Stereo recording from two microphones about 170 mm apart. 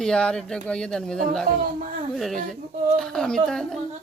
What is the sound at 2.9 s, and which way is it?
Speech, 5° left (ahead or behind).